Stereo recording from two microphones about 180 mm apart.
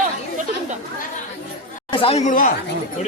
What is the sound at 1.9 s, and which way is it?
Speech, 30° left (ahead or behind).